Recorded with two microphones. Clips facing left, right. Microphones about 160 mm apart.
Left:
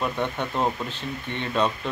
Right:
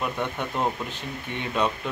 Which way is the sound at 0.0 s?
10° right (ahead or behind).